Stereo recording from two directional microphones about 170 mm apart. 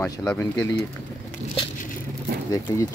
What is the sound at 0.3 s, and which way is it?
Speech, 15° left (ahead or behind).